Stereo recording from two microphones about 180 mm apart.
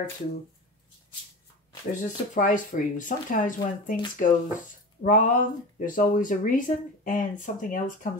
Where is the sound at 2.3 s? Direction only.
45° left (ahead or behind).